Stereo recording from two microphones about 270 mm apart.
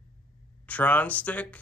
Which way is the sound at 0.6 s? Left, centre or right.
Centre.